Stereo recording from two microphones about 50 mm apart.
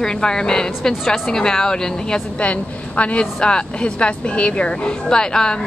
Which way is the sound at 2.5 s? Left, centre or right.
Left.